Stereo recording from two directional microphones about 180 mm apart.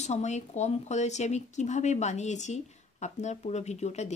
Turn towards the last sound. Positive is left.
turn(degrees=40)  # may be behind; listen again after turning